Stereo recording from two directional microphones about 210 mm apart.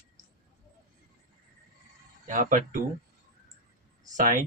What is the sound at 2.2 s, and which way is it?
Speech, 40° right (ahead or behind).